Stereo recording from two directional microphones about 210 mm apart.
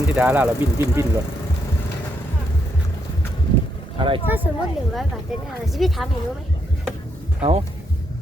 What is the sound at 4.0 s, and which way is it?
Speech, 25° right (ahead or behind).